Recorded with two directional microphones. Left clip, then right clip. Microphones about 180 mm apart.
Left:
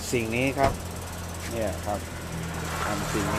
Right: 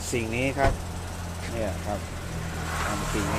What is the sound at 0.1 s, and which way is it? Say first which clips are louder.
Speech: left 1 dB; 20° left (ahead or behind).